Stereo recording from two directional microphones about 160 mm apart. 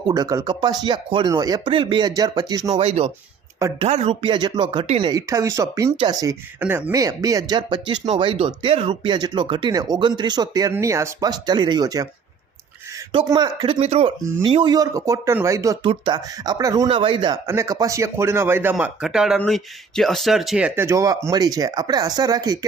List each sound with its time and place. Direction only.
0.1 s speech: 20° right (ahead or behind)
2.6 s speech: 40° right (ahead or behind)
5.3 s speech: 20° right (ahead or behind)
6.6 s speech: 10° right (ahead or behind)
13.1 s speech: 25° right (ahead or behind)
16.9 s speech: 35° right (ahead or behind)